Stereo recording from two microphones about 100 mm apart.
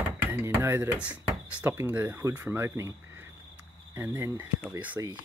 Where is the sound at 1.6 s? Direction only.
20° right (ahead or behind).